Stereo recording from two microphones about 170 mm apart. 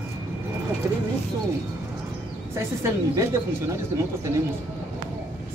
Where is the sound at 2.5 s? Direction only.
15° right (ahead or behind).